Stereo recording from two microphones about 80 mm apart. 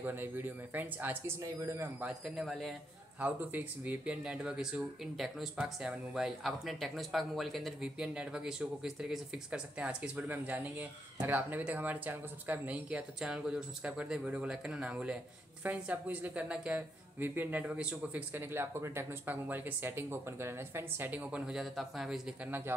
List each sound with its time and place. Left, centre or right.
0.0 s speech: right
1.4 s speech: right
2.0 s speech: centre
2.3 s speech: centre
3.2 s speech: centre
7.8 s speech: centre
13.2 s speech: centre
18.3 s speech: right
21.1 s speech: centre
21.4 s speech: centre
22.4 s speech: right